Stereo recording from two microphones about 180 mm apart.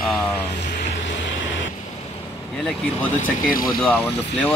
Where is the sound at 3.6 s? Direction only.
10° left (ahead or behind).